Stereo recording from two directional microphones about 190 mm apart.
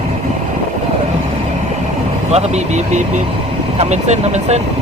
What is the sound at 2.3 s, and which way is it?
Speech, 35° right (ahead or behind).